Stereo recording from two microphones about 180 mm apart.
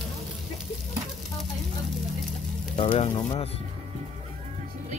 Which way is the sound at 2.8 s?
35° left (ahead or behind).